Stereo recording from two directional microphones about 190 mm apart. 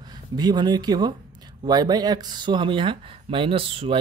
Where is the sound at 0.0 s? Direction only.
20° right (ahead or behind).